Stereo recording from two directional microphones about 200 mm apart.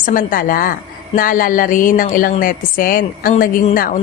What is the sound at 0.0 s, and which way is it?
A woman's voice, 45° left (ahead or behind).